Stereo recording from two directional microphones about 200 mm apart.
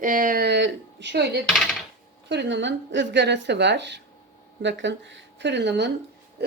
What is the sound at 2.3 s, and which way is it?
Speech, 60° right (ahead or behind).